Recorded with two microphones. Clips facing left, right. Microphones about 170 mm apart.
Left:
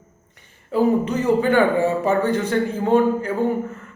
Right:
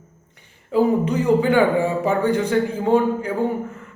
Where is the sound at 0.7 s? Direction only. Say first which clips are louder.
Even; 15° right (ahead or behind).